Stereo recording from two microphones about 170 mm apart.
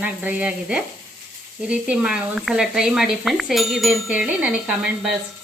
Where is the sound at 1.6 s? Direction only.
5° right (ahead or behind).